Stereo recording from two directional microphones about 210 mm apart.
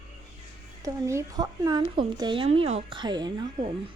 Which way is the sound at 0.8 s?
15° right (ahead or behind).